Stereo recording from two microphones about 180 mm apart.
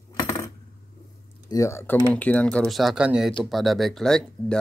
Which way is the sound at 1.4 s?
15° left (ahead or behind).